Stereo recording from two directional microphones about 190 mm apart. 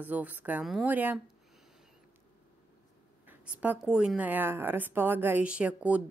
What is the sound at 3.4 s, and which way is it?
A woman's voice, 5° right (ahead or behind).